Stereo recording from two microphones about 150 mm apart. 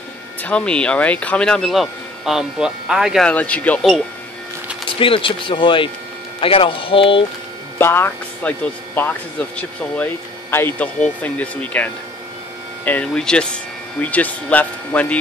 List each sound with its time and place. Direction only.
0.4 s speech: 10° left (ahead or behind)
3.3 s speech: 10° left (ahead or behind)
4.8 s speech: 35° left (ahead or behind)
7.8 s speech: 15° left (ahead or behind)